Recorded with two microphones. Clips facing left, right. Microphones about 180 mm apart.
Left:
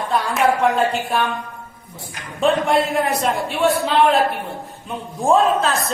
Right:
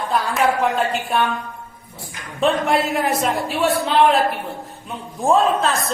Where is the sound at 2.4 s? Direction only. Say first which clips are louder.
Left 1 dB; centre (ahead or behind).